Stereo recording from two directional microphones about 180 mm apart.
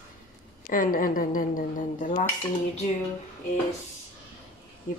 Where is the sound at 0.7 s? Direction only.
50° left (ahead or behind).